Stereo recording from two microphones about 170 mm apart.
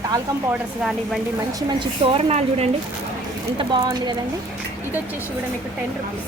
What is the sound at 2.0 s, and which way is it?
Speech, 35° right (ahead or behind).